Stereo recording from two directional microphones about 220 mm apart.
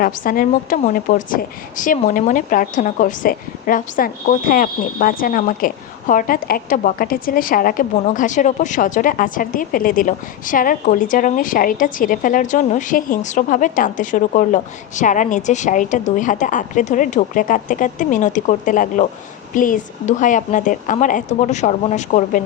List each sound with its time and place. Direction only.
0.0 s a woman's voice: 40° left (ahead or behind)